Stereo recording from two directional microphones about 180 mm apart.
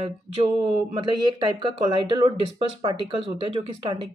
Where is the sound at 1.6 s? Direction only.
25° right (ahead or behind).